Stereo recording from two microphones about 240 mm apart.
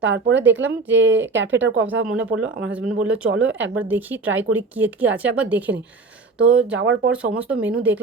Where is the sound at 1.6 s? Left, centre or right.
Right.